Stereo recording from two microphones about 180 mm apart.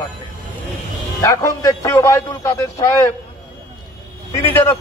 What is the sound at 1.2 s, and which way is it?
A man's voice, 20° left (ahead or behind).